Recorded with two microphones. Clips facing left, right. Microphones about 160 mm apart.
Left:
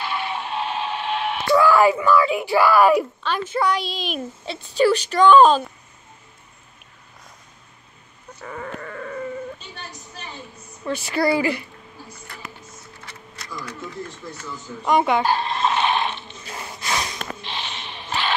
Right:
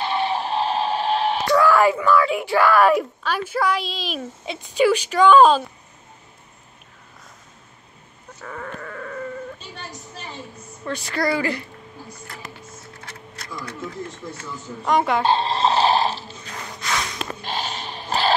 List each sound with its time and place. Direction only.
0.0 s a sound: 30° right (ahead or behind)
1.5 s speech: centre (ahead or behind)
3.3 s speech: 10° right (ahead or behind)
4.5 s speech: 10° right (ahead or behind)
8.4 s sheep: 5° left (ahead or behind)
10.9 s speech: 5° left (ahead or behind)
14.9 s speech: centre (ahead or behind)
15.2 s snoring: 30° right (ahead or behind)
16.4 s snort: 10° left (ahead or behind)
17.4 s a sound: 40° right (ahead or behind)